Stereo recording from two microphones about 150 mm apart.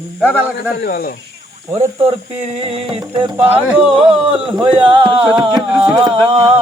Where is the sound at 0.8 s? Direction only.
85° left.